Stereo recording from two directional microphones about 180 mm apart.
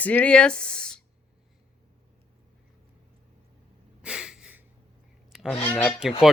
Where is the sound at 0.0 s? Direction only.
10° left (ahead or behind).